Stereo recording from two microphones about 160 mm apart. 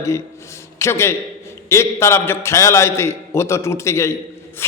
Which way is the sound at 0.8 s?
15° left (ahead or behind).